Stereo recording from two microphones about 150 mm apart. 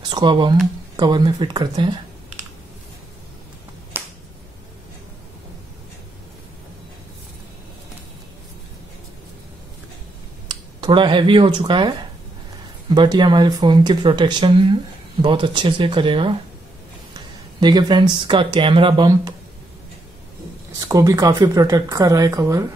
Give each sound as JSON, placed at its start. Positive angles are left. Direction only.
{"t": 0.1, "sound": "speech", "side_deg": -30}
{"t": 3.9, "sound": "finger snapping", "side_deg": -15}
{"t": 10.8, "sound": "speech", "side_deg": -35}
{"t": 17.6, "sound": "speech", "side_deg": -30}
{"t": 20.9, "sound": "speech", "side_deg": -20}